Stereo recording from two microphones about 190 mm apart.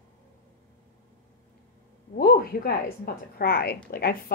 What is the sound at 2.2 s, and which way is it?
Speech, 50° left (ahead or behind).